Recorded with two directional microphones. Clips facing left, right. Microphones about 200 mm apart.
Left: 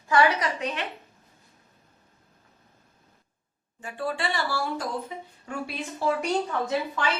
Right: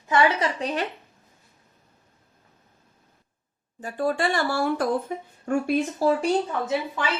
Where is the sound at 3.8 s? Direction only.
40° right (ahead or behind).